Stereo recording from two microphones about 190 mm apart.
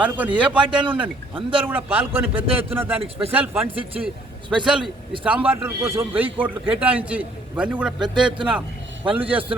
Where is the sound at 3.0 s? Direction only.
30° right (ahead or behind).